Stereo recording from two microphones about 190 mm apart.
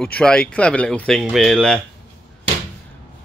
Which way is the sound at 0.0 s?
5° left (ahead or behind).